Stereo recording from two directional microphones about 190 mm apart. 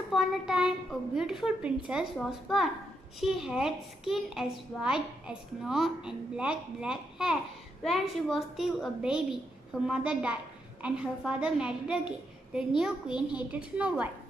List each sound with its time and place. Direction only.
0.1 s a child's voice: centre (ahead or behind)
13.1 s a child's voice: 25° left (ahead or behind)
13.5 s a woman's voice: 5° right (ahead or behind)